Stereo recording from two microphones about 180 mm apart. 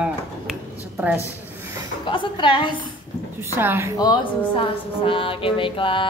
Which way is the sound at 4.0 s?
25° left (ahead or behind).